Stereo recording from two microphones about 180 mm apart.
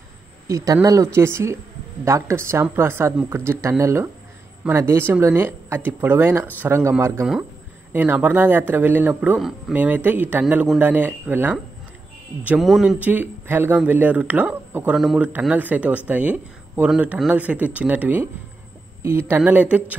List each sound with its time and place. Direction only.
0.5 s speech: 20° right (ahead or behind)